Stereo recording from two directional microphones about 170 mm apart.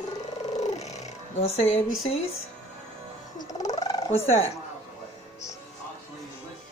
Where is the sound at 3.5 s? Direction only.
45° left (ahead or behind).